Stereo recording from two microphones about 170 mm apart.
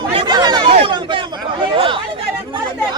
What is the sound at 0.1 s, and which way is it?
Chatter, 25° right (ahead or behind).